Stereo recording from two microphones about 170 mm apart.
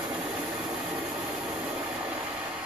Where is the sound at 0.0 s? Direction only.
5° right (ahead or behind).